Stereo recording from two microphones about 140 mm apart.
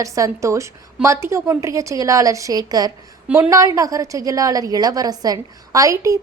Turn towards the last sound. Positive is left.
turn(degrees=-25)  # may be behind; listen again after turning